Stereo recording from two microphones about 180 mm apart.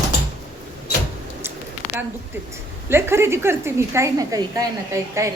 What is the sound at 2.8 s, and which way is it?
A woman's voice, 15° right (ahead or behind).